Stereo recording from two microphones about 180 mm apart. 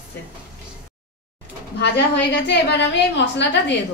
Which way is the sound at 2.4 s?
75° left (ahead or behind).